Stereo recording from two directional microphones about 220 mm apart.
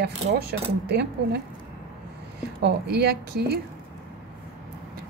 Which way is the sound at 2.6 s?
50° right (ahead or behind).